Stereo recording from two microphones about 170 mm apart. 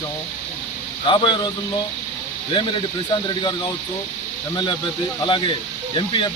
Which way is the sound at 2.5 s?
30° left (ahead or behind).